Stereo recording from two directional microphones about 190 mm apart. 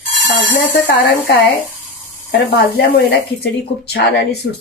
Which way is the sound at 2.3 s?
65° left (ahead or behind).